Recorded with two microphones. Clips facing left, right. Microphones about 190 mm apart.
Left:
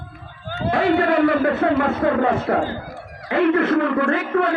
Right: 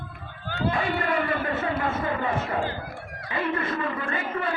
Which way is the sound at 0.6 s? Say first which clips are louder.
Left 9 dB; 70° left (ahead or behind).